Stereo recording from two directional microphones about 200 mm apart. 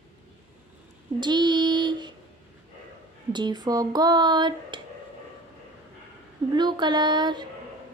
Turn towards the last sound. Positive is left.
turn(degrees=-20)  # may be behind; listen again after turning